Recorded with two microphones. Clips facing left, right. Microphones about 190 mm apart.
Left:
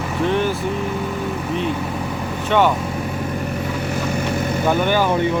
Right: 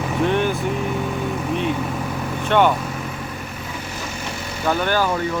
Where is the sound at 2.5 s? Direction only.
5° left (ahead or behind).